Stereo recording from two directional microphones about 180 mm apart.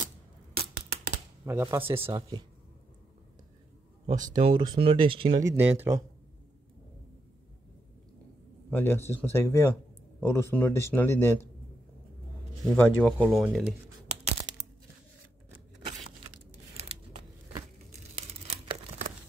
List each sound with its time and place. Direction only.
0.6 s scissors: 65° right (ahead or behind)
1.4 s speech: 15° right (ahead or behind)
1.8 s speech: 30° right (ahead or behind)
4.2 s speech: 25° right (ahead or behind)
5.4 s speech: 15° right (ahead or behind)
8.6 s speech: 10° left (ahead or behind)
12.6 s speech: 5° left (ahead or behind)
15.5 s a sound: 30° right (ahead or behind)
16.7 s scissors: 30° right (ahead or behind)
18.4 s tearing: 30° right (ahead or behind)